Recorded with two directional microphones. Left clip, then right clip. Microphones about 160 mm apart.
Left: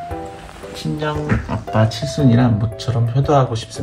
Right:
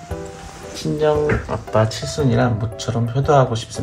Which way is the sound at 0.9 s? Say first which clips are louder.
Right 6 dB; 80° right.